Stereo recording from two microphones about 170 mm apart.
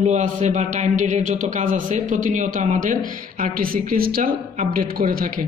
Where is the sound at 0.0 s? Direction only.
45° right (ahead or behind).